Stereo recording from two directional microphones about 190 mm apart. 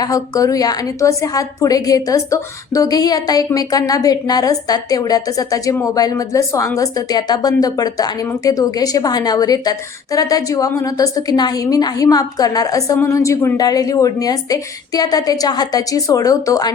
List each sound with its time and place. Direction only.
0.0 s speech: 15° left (ahead or behind)